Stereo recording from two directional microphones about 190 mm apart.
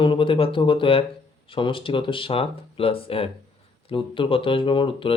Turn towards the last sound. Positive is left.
turn(degrees=25)  # may be behind; listen again after turning